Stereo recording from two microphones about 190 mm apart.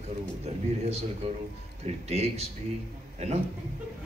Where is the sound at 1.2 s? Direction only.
35° right (ahead or behind).